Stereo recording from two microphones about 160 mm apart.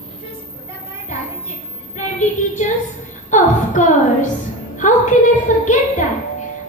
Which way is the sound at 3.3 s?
50° left (ahead or behind).